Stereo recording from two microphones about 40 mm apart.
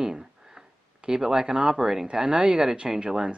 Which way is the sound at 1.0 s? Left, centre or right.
Centre.